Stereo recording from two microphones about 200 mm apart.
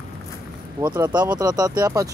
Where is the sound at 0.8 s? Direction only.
20° right (ahead or behind).